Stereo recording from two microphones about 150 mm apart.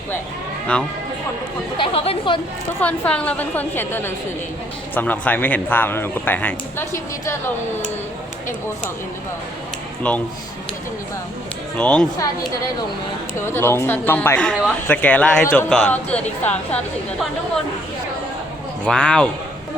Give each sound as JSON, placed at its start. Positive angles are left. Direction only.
{"t": 0.7, "sound": "speech", "side_deg": 10}
{"t": 1.8, "sound": "speech", "side_deg": 35}
{"t": 2.8, "sound": "speech", "side_deg": 10}
{"t": 10.0, "sound": "speech", "side_deg": 5}
{"t": 11.8, "sound": "speech", "side_deg": 5}
{"t": 13.4, "sound": "speech", "side_deg": 15}
{"t": 18.9, "sound": "a man's voice", "side_deg": 5}